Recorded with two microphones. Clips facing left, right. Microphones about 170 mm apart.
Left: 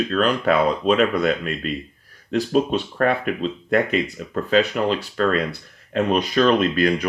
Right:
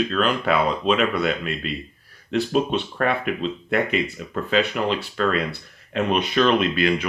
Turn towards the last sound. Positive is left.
turn(degrees=40)  # may be behind; listen again after turning